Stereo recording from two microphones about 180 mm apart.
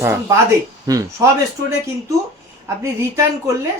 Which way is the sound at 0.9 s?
20° right (ahead or behind).